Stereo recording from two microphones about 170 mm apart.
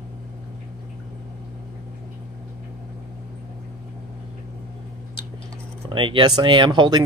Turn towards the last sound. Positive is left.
turn(degrees=-25)  # may be behind; listen again after turning